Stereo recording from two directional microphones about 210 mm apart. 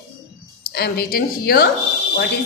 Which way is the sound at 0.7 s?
45° left (ahead or behind).